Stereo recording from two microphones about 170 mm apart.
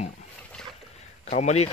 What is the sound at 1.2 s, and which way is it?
Speech, 40° left (ahead or behind).